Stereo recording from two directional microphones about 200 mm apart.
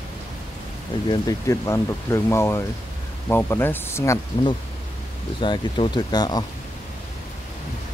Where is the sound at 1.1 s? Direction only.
20° left (ahead or behind).